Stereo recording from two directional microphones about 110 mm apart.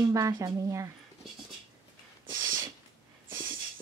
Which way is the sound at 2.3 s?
30° right (ahead or behind).